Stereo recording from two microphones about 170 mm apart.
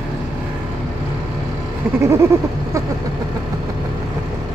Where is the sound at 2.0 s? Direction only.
15° right (ahead or behind).